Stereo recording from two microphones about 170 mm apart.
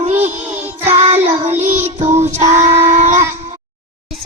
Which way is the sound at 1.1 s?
40° right (ahead or behind).